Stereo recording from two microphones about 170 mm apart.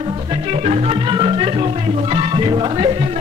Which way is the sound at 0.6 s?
35° right (ahead or behind).